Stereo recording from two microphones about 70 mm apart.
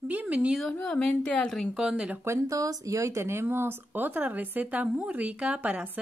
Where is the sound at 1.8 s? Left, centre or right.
Centre.